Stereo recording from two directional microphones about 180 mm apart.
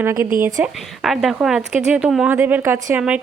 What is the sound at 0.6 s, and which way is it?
Speech, centre (ahead or behind).